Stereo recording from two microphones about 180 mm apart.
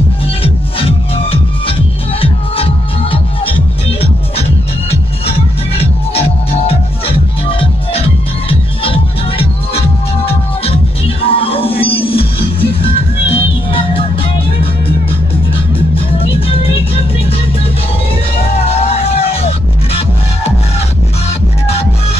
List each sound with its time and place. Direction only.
0.4 s music: 30° left (ahead or behind)
15.9 s music: 30° left (ahead or behind)
18.6 s music: 35° left (ahead or behind)